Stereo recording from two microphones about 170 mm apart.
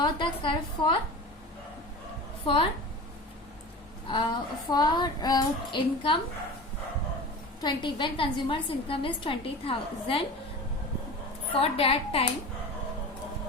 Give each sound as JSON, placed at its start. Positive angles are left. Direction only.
{"t": 0.0, "sound": "female singing", "side_deg": 30}
{"t": 2.5, "sound": "female singing", "side_deg": 30}
{"t": 4.1, "sound": "female singing", "side_deg": 30}
{"t": 7.6, "sound": "a woman's voice", "side_deg": 30}
{"t": 11.6, "sound": "a woman's voice", "side_deg": 35}